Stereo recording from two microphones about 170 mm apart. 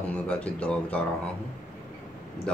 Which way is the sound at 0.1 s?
5° left (ahead or behind).